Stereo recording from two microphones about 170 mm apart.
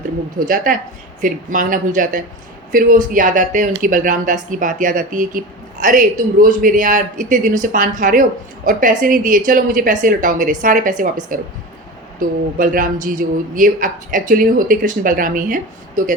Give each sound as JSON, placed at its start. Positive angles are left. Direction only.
{"t": 0.3, "sound": "speech", "side_deg": -55}